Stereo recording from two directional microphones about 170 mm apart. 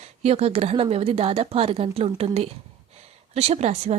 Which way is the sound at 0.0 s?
35° right (ahead or behind).